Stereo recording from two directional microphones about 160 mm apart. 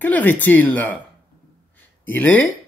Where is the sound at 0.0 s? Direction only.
10° left (ahead or behind).